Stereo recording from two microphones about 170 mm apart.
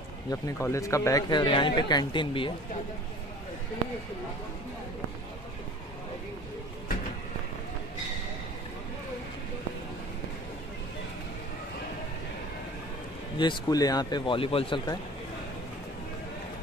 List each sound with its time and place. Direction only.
0.3 s speech: 20° left (ahead or behind)
13.4 s speech: 25° left (ahead or behind)